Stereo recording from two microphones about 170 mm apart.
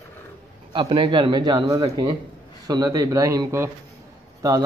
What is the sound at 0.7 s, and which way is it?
Speech, 30° right (ahead or behind).